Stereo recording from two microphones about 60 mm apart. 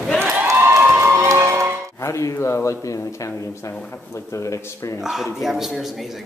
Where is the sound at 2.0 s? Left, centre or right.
Left.